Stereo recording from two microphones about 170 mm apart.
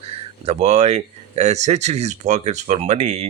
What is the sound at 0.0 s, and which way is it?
Speech, 40° right (ahead or behind).